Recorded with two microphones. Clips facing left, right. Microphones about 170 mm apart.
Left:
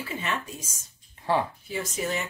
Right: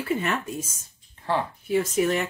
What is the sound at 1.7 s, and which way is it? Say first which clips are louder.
Speech: right 10 dB; 65° right (ahead or behind).